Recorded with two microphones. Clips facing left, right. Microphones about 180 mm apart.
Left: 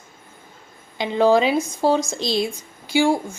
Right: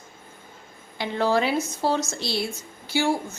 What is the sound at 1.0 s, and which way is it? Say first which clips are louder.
Speech: left 6 dB; 15° left (ahead or behind).